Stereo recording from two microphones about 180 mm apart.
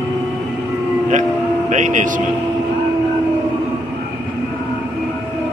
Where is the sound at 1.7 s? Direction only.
45° right (ahead or behind).